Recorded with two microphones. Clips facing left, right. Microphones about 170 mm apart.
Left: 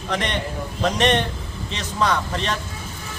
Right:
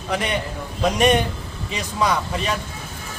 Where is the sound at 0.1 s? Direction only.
10° right (ahead or behind).